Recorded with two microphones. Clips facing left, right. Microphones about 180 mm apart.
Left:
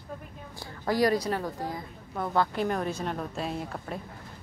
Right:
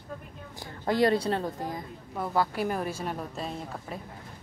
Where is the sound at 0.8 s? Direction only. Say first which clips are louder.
Right 1 dB; 25° right (ahead or behind).